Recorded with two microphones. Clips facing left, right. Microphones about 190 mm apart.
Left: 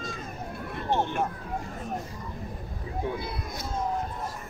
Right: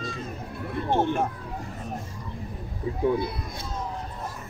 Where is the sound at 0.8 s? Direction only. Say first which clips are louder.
Right 3 dB; 50° right (ahead or behind).